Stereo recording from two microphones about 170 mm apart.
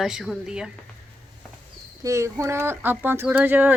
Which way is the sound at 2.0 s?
20° right (ahead or behind).